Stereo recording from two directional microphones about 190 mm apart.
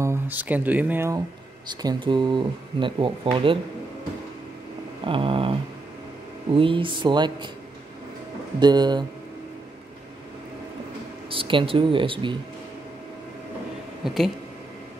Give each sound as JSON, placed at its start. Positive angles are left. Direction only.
{"t": 0.0, "sound": "speech", "side_deg": -10}
{"t": 5.0, "sound": "speech", "side_deg": -25}
{"t": 8.5, "sound": "speech", "side_deg": -20}
{"t": 11.2, "sound": "speech", "side_deg": -25}
{"t": 14.0, "sound": "speech", "side_deg": 0}